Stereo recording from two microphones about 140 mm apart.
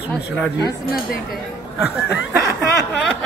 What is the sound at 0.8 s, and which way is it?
Speech, 90° left.